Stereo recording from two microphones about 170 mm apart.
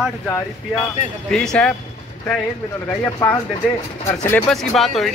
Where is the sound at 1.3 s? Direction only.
5° left (ahead or behind).